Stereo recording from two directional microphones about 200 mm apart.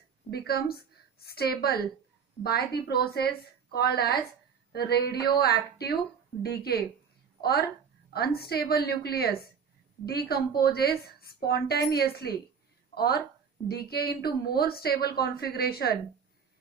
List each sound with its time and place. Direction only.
0.3 s a woman's voice: 50° left (ahead or behind)
8.1 s a woman's voice: 50° left (ahead or behind)